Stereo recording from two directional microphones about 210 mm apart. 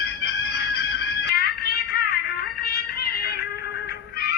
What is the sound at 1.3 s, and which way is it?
Music, 50° left (ahead or behind).